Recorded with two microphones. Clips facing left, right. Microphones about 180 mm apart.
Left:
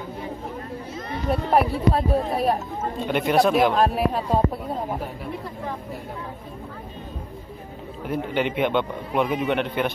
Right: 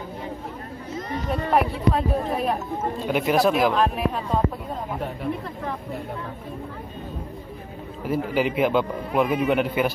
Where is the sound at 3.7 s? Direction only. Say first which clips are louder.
Left 2 dB; 35° left (ahead or behind).